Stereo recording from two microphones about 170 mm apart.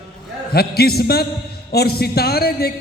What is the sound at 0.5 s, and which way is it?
A man's voice, 65° left (ahead or behind).